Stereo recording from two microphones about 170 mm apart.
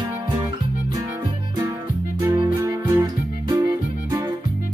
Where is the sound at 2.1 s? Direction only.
20° right (ahead or behind).